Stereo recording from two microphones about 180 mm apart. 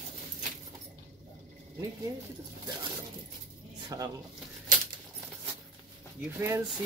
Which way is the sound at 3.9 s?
20° right (ahead or behind).